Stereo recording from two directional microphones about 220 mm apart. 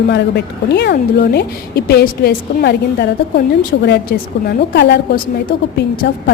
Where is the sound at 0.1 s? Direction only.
50° left (ahead or behind).